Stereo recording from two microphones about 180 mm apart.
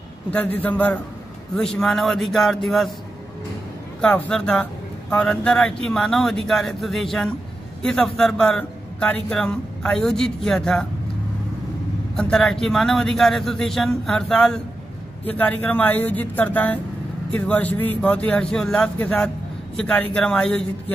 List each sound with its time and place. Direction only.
0.3 s a man's voice: 10° left (ahead or behind)
4.0 s a man's voice: 5° left (ahead or behind)
12.2 s a man's voice: 5° left (ahead or behind)